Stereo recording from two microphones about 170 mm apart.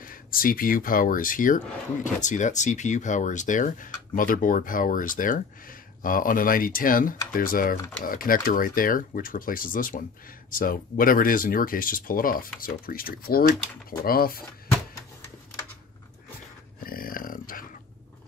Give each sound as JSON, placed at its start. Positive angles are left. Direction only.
{"t": 0.0, "sound": "speech", "side_deg": 55}
{"t": 16.8, "sound": "speech", "side_deg": 55}